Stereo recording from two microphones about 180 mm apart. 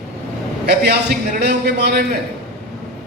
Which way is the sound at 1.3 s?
60° right (ahead or behind).